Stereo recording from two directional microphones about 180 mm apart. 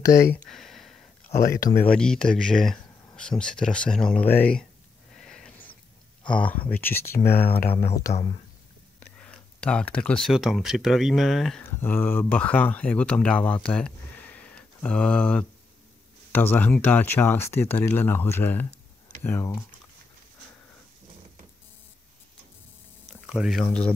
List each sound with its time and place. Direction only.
0.5 s a sound: centre (ahead or behind)
1.8 s speech: 5° left (ahead or behind)
5.1 s a sound: 5° left (ahead or behind)
6.3 s speech: 5° left (ahead or behind)
7.2 s speech: 60° left (ahead or behind)
7.8 s speech: 15° left (ahead or behind)
8.1 s speech: 30° left (ahead or behind)
9.0 s speech: 5° left (ahead or behind)
11.6 s speech: 10° left (ahead or behind)
23.2 s speech: 5° right (ahead or behind)